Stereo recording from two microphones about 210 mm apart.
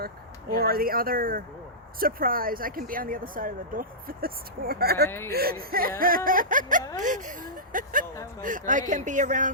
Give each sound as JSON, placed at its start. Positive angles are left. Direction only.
{"t": 0.6, "sound": "speech", "side_deg": -45}
{"t": 5.0, "sound": "speech", "side_deg": 10}
{"t": 5.3, "sound": "speech", "side_deg": -45}